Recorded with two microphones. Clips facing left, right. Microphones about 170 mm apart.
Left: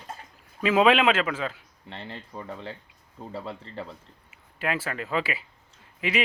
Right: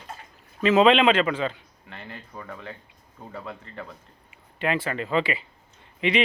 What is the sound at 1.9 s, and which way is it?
Speech, 30° left (ahead or behind).